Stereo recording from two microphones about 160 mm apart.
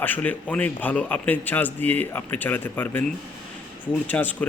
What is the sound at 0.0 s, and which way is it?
A man's voice, 10° left (ahead or behind).